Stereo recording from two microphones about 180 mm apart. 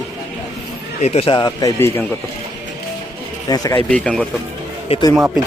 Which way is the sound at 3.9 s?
5° left (ahead or behind).